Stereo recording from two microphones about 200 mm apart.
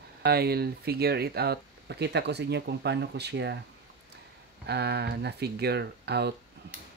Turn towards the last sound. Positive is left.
turn(degrees=-55)  # may be behind; listen again after turning